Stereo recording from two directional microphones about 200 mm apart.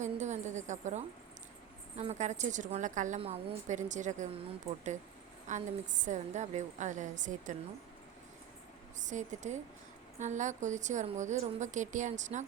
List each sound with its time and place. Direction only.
0.0 s a sound: 35° right (ahead or behind)
2.0 s a woman's voice: 35° right (ahead or behind)
5.5 s a woman's voice: 40° right (ahead or behind)
9.0 s a woman's voice: 40° right (ahead or behind)